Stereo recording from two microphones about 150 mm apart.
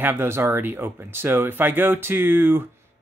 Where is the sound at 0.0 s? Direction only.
15° right (ahead or behind).